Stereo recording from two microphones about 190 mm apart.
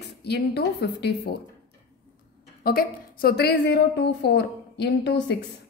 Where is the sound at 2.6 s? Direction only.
50° left (ahead or behind).